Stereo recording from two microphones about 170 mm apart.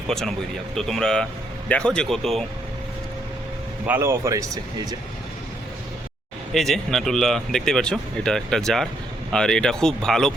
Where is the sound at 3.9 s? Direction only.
15° right (ahead or behind).